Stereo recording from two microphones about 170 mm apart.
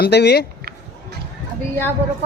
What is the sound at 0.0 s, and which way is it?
Speech, 80° left.